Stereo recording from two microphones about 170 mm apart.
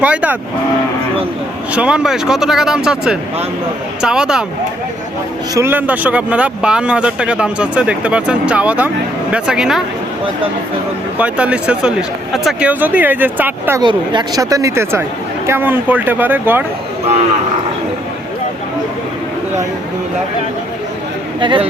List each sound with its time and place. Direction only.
0.0 s speech: 10° right (ahead or behind)
1.7 s speech: 5° right (ahead or behind)
5.5 s speech: 10° right (ahead or behind)
11.2 s speech: 5° right (ahead or behind)
13.8 s speech: 25° right (ahead or behind); by 16.6 s 10° right (ahead or behind)
21.4 s speech: 30° right (ahead or behind)